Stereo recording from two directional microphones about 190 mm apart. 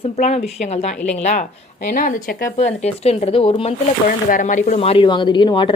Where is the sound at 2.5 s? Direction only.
35° left (ahead or behind).